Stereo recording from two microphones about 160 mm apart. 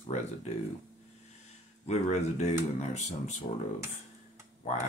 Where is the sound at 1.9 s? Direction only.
45° left (ahead or behind).